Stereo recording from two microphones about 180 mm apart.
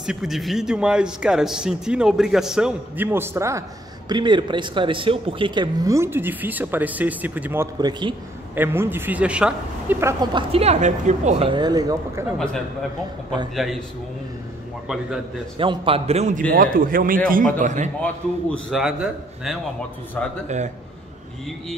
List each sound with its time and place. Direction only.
0.0 s a man's voice: centre (ahead or behind)
10.3 s speech: 35° right (ahead or behind); by 12.4 s 15° right (ahead or behind)
13.6 s a man's voice: centre (ahead or behind)
15.5 s a man's voice: 30° right (ahead or behind)
18.0 s a man's voice: 5° left (ahead or behind)
20.4 s a man's voice: 40° right (ahead or behind)